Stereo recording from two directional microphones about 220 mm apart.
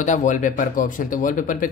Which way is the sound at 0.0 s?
35° left (ahead or behind).